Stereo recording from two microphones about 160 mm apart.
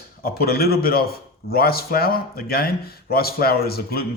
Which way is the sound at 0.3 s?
75° left (ahead or behind).